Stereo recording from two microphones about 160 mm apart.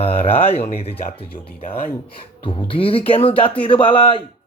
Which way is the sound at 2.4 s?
30° left (ahead or behind).